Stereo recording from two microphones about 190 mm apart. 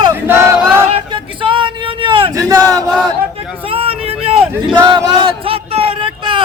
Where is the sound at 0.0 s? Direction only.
15° right (ahead or behind).